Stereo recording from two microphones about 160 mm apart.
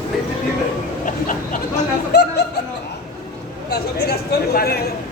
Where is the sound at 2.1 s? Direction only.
90° left.